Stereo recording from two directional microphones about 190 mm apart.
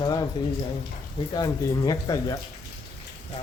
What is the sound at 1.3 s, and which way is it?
Speech, 20° left (ahead or behind).